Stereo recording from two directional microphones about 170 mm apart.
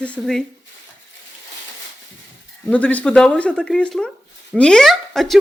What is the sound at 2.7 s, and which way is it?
Speech, 10° left (ahead or behind).